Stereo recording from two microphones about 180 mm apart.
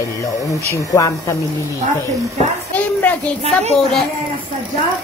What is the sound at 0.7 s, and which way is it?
Speech, 20° left (ahead or behind).